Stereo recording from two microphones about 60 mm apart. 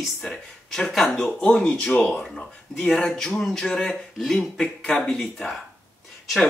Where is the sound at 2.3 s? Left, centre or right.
Centre.